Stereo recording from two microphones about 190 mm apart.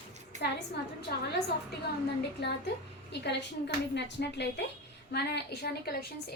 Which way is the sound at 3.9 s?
65° left (ahead or behind).